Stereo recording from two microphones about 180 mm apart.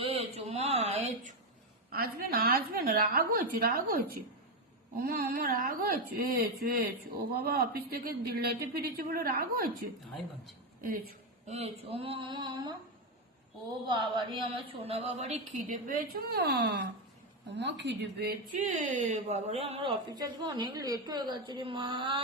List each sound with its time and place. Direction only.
0.0 s a sound: 35° right (ahead or behind)
1.9 s speech: 55° right (ahead or behind)
10.8 s a woman's voice: 55° right (ahead or behind)
11.4 s speech: 35° right (ahead or behind)
14.5 s a woman's voice: 35° right (ahead or behind); by 18.3 s 70° right (ahead or behind)
18.6 s a woman's voice: 40° right (ahead or behind)